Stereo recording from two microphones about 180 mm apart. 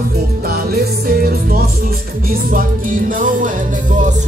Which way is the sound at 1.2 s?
60° right (ahead or behind).